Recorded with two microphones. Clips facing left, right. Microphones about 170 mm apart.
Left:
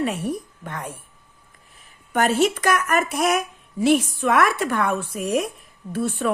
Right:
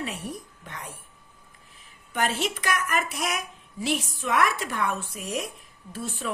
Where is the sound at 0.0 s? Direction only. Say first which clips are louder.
Left 9 dB; 55° left (ahead or behind).